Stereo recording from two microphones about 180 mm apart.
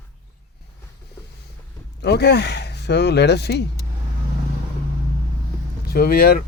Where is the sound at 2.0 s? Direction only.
70° left (ahead or behind).